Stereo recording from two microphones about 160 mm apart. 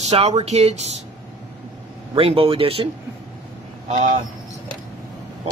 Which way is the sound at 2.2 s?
35° right (ahead or behind).